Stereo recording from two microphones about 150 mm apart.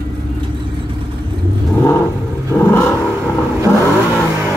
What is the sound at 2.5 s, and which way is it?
Vehicle, 15° left (ahead or behind).